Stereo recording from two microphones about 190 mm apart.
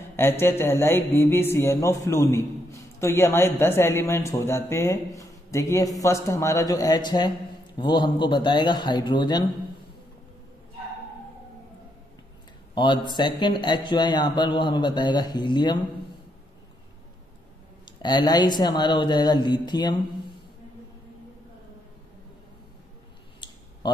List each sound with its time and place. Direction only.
0.1 s music: 10° left (ahead or behind)
12.7 s speech: 25° left (ahead or behind)
17.8 s speech: 20° left (ahead or behind)